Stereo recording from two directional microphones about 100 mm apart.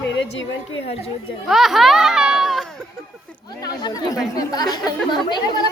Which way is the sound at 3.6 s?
40° left (ahead or behind).